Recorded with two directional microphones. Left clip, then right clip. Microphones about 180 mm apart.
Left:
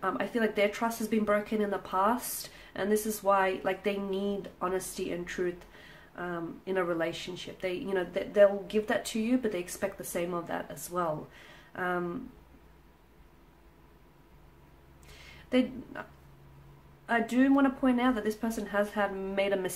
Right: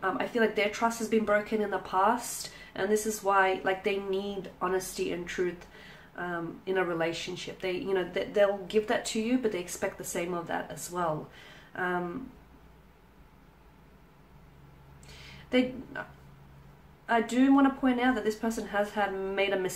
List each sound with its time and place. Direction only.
0.0 s speech: 35° left (ahead or behind)
15.5 s speech: 30° left (ahead or behind)